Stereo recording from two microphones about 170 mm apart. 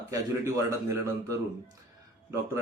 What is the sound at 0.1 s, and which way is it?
A man's voice, 15° right (ahead or behind).